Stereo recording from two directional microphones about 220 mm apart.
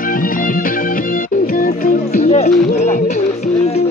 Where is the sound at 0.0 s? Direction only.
40° left (ahead or behind).